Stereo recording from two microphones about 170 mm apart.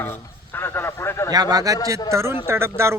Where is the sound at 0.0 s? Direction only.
15° left (ahead or behind).